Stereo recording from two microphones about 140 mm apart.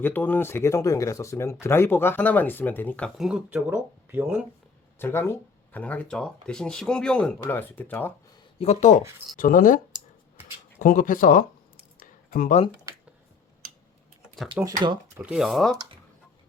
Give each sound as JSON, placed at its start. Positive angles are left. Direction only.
{"t": 0.0, "sound": "speech", "side_deg": 15}
{"t": 3.2, "sound": "speech", "side_deg": -5}
{"t": 4.9, "sound": "speech", "side_deg": 15}
{"t": 8.5, "sound": "speech", "side_deg": 50}
{"t": 11.9, "sound": "a sound", "side_deg": 85}
{"t": 14.6, "sound": "speech", "side_deg": -10}